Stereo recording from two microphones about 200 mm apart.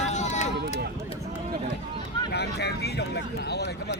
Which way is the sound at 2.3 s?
55° left (ahead or behind).